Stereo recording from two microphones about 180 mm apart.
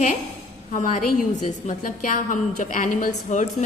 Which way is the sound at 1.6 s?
45° left (ahead or behind).